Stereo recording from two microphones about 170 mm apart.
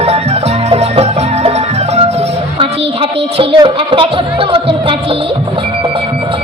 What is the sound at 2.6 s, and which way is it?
Music, 35° right (ahead or behind).